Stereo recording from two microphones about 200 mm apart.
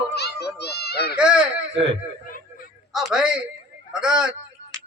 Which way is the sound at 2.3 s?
45° left (ahead or behind).